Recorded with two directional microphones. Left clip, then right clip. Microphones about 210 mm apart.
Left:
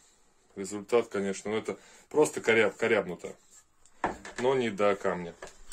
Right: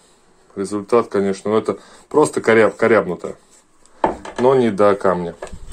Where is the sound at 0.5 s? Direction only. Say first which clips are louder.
Right 11 dB; centre (ahead or behind).